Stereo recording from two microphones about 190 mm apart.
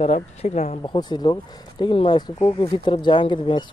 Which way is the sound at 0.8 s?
20° left (ahead or behind).